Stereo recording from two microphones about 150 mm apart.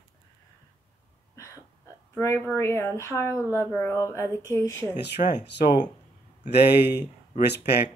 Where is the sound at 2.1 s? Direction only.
15° left (ahead or behind).